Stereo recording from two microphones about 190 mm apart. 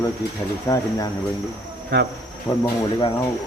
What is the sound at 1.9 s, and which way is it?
Speech, 65° right (ahead or behind).